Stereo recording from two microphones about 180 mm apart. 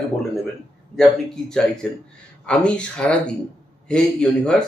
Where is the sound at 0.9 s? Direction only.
5° left (ahead or behind).